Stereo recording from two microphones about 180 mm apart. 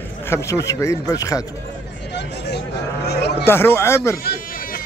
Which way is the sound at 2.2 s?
70° left (ahead or behind).